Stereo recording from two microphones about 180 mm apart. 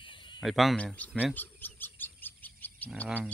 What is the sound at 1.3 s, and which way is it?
Bird, 10° left (ahead or behind).